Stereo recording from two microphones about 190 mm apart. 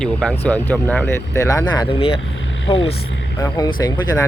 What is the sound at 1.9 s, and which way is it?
Speech, 30° left (ahead or behind).